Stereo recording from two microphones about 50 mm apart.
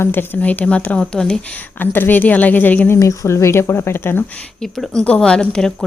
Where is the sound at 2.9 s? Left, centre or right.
Left.